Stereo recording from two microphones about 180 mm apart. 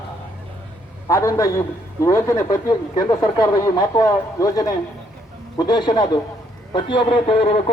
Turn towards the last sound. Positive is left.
turn(degrees=30)  # may be behind; listen again after turning